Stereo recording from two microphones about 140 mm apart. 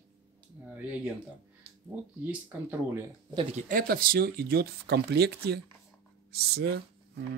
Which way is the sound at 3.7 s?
90° right.